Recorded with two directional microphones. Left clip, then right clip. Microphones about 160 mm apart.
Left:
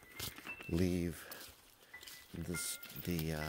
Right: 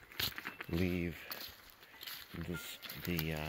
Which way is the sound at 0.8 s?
45° left (ahead or behind).